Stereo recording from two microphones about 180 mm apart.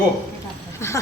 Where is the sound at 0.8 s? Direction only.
15° left (ahead or behind).